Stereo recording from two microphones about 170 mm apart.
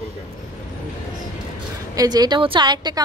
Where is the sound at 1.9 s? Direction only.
20° right (ahead or behind).